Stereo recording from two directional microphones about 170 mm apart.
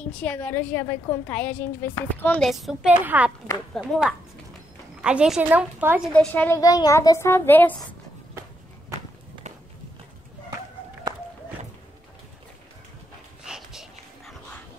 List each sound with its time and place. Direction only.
0.0 s a woman's voice: 10° left (ahead or behind)
2.5 s a woman's voice: 5° right (ahead or behind)
3.7 s a woman's voice: 5° left (ahead or behind)
6.1 s a woman's voice: 10° left (ahead or behind)
6.6 s a woman's voice: 20° left (ahead or behind)
13.4 s dog: 5° right (ahead or behind)